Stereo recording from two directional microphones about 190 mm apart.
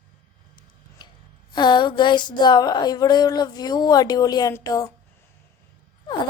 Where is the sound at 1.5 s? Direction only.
25° left (ahead or behind).